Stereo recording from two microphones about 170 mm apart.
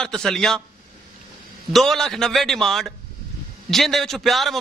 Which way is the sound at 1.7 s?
Centre (ahead or behind).